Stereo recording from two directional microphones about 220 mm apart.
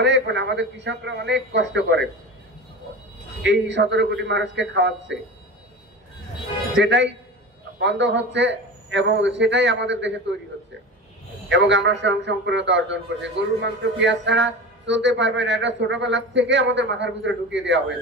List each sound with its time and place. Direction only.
0.0 s a man's voice: 55° right (ahead or behind)
3.4 s a man's voice: 55° right (ahead or behind)
6.7 s a man's voice: 55° right (ahead or behind)
11.4 s a man's voice: 55° right (ahead or behind)